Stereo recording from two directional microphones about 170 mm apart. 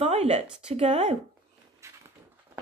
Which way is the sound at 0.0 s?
40° right (ahead or behind).